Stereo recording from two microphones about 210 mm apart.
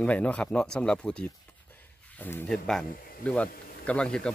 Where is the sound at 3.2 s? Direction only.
5° left (ahead or behind).